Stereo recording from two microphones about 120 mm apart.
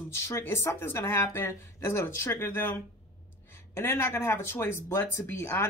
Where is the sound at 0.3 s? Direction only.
20° left (ahead or behind).